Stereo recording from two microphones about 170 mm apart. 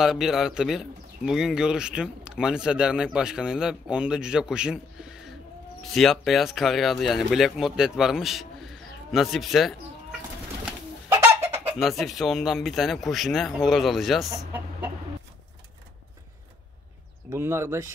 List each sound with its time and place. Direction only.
0.0 s speech: centre (ahead or behind)
5.8 s speech: centre (ahead or behind)
10.6 s bird: 15° right (ahead or behind)
11.8 s speech: centre (ahead or behind)
14.3 s speech: 15° right (ahead or behind)
17.3 s speech: 15° right (ahead or behind)